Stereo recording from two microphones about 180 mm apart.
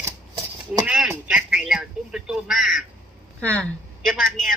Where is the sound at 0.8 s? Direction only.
5° right (ahead or behind).